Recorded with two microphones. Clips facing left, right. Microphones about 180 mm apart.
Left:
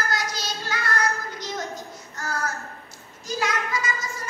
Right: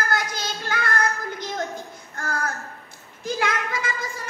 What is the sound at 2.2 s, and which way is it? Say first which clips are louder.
Child singing: right 2 dB; 55° right (ahead or behind).